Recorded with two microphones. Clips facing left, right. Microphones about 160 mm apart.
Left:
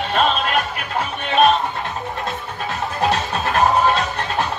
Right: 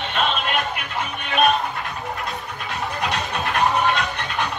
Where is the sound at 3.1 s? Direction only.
35° left (ahead or behind).